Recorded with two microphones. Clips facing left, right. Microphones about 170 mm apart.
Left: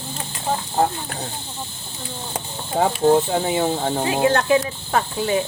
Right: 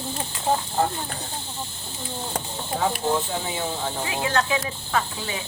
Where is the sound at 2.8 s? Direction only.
60° left (ahead or behind).